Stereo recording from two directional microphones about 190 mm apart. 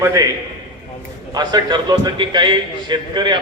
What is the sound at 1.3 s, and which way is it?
A man's voice, 20° right (ahead or behind).